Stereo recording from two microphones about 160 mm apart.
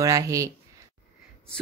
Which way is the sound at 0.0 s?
20° right (ahead or behind).